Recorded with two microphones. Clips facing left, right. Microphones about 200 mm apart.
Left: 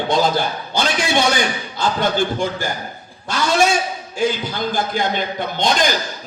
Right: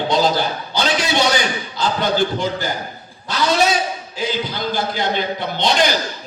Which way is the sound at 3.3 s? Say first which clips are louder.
Even; 50° left (ahead or behind).